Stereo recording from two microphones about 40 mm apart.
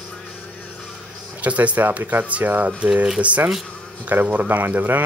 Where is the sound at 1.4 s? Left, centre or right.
Right.